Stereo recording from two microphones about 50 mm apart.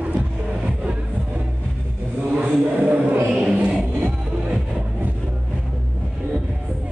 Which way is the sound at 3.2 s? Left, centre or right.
Centre.